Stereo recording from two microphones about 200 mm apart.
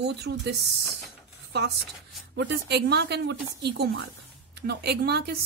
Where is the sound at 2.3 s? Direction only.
55° right (ahead or behind).